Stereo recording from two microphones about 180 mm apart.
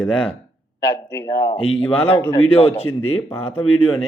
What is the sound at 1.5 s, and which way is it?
Speech, 30° left (ahead or behind).